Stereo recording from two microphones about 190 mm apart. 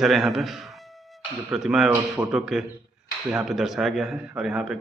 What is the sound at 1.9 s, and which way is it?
Speech, 15° right (ahead or behind).